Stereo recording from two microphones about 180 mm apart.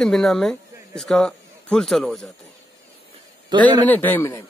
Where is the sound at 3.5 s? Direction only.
25° right (ahead or behind).